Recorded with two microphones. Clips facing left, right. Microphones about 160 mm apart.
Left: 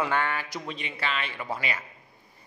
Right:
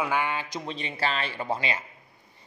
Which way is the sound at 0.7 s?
35° right (ahead or behind).